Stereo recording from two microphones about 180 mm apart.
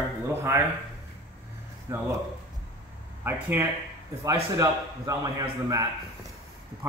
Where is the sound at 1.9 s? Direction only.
15° right (ahead or behind).